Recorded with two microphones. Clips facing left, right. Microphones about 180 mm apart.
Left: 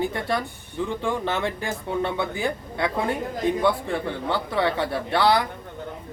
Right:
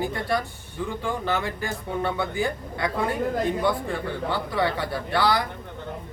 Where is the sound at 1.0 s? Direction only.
25° left (ahead or behind).